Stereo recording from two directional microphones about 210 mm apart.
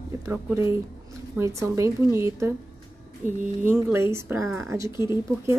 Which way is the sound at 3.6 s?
10° right (ahead or behind).